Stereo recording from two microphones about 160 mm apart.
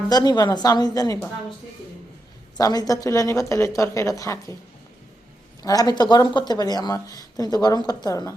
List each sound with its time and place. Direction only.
0.1 s speech: 25° left (ahead or behind)
2.6 s speech: 25° left (ahead or behind)
5.6 s speech: 25° left (ahead or behind)